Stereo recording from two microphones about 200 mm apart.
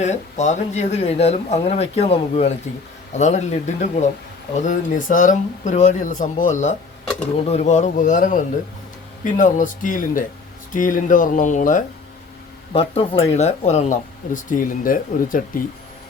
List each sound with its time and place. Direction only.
0.0 s speech: 35° left (ahead or behind)
12.7 s speech: 30° left (ahead or behind)